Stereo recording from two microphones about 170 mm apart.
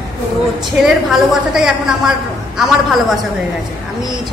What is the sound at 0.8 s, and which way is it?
A woman's voice, 5° right (ahead or behind).